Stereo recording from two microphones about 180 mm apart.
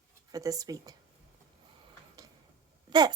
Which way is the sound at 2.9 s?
20° right (ahead or behind).